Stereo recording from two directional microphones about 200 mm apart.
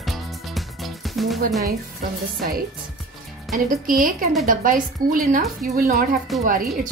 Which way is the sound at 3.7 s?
45° right (ahead or behind).